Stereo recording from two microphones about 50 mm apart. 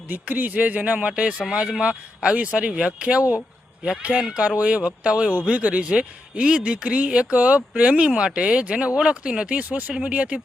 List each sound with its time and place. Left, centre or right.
0.3 s speech: right
9.6 s speech: right
9.9 s speech: centre